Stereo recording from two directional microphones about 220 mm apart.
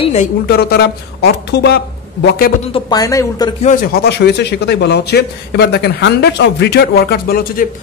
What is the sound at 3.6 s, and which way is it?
A man's voice, 40° left (ahead or behind).